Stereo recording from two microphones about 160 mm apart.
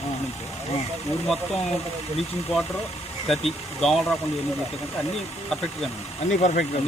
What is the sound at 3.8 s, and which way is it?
Speech, centre (ahead or behind).